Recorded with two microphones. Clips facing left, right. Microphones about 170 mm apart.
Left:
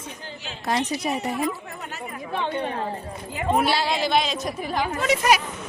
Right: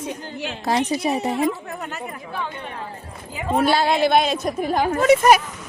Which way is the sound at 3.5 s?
50° right (ahead or behind).